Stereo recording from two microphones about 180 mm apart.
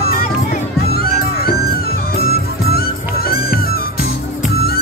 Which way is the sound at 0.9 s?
55° left (ahead or behind).